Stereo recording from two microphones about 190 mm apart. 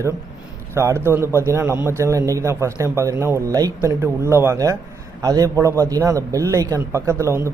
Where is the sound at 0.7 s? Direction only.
15° right (ahead or behind).